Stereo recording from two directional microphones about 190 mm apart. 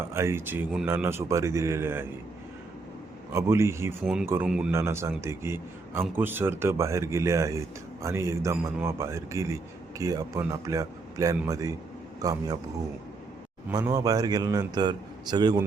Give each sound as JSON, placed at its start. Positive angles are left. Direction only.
{"t": 0.1, "sound": "a man's voice", "side_deg": -15}
{"t": 3.3, "sound": "a man's voice", "side_deg": -15}
{"t": 4.0, "sound": "a man's voice", "side_deg": 0}
{"t": 13.7, "sound": "a man's voice", "side_deg": -20}